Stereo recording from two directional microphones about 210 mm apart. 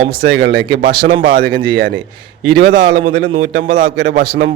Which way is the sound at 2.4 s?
60° right (ahead or behind).